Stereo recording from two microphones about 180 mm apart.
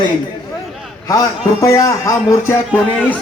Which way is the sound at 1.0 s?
20° left (ahead or behind).